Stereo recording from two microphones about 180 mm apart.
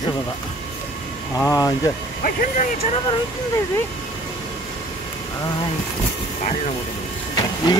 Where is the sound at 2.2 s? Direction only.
45° left (ahead or behind).